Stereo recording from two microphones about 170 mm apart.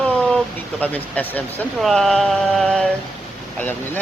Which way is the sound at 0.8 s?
10° left (ahead or behind).